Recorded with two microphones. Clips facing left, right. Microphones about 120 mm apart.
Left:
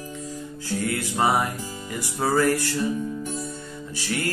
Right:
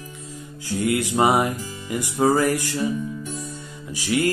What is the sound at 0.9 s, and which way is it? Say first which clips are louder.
Music: right 5 dB; 15° right (ahead or behind).